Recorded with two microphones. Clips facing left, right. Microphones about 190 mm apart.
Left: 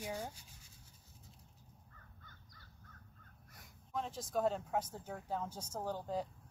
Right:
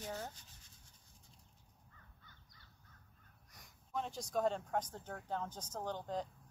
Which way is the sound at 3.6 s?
Centre (ahead or behind).